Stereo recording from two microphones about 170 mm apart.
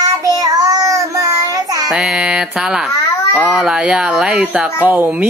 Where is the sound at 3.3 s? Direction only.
5° right (ahead or behind).